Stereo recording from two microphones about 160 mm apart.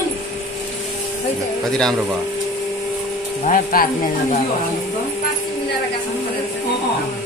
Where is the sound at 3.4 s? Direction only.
65° left (ahead or behind).